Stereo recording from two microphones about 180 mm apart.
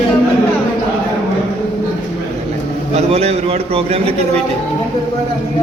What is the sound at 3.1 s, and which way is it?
A man's voice, 35° right (ahead or behind).